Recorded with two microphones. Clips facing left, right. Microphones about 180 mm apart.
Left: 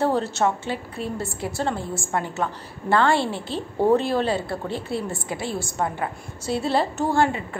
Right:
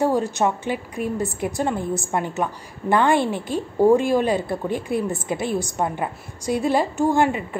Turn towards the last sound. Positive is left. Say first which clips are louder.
# right 2 dB
turn(degrees=-15)  # may be behind; listen again after turning